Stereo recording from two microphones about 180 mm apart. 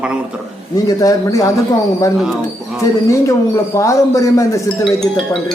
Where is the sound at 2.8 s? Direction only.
15° left (ahead or behind).